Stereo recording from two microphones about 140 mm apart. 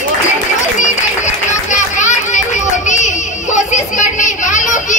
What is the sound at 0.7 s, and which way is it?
Children playing, 60° left (ahead or behind).